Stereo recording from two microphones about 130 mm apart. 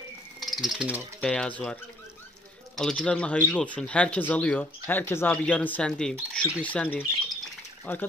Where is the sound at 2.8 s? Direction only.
5° left (ahead or behind).